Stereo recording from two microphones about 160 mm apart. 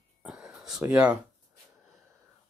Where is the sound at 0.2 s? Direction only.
5° right (ahead or behind).